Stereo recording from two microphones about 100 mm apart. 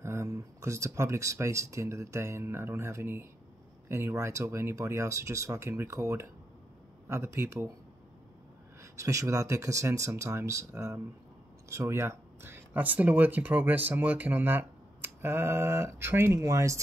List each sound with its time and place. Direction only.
0.0 s speech: 30° right (ahead or behind)
8.8 s speech: 30° right (ahead or behind)